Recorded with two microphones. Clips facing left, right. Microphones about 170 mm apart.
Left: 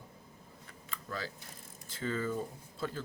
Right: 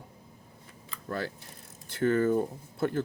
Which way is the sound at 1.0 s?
60° right (ahead or behind).